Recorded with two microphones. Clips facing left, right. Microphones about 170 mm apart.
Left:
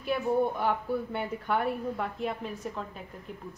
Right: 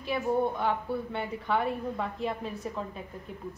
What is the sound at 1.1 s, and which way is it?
A woman's voice, 5° left (ahead or behind).